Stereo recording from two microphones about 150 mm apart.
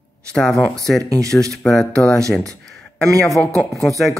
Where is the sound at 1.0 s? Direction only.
20° right (ahead or behind).